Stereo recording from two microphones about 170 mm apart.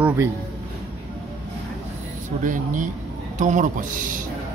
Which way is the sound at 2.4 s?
50° right (ahead or behind).